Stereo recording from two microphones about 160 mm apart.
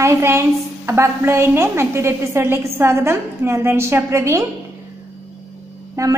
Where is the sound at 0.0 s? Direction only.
15° right (ahead or behind).